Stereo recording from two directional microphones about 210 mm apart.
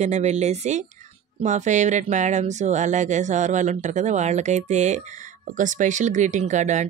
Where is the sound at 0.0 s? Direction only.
35° right (ahead or behind).